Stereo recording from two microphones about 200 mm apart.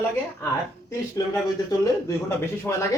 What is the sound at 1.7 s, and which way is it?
Speech, 15° left (ahead or behind).